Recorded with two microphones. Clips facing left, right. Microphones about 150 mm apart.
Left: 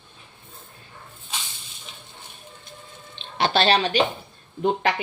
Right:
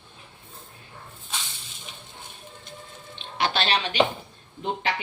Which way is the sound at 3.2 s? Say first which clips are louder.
Left 5 dB; 30° left (ahead or behind).